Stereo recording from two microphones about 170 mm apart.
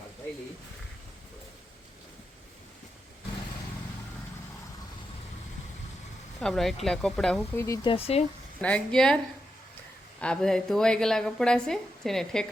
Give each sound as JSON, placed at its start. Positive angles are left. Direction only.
{"t": 6.4, "sound": "a woman's voice", "side_deg": 0}
{"t": 7.5, "sound": "speech", "side_deg": 15}
{"t": 7.9, "sound": "speech", "side_deg": 35}
{"t": 8.6, "sound": "a woman's voice", "side_deg": 5}